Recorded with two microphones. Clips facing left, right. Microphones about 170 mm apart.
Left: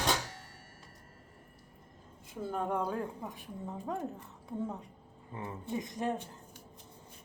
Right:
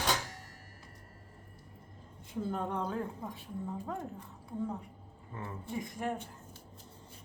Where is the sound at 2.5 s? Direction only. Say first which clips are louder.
Left 4 dB; 10° left (ahead or behind).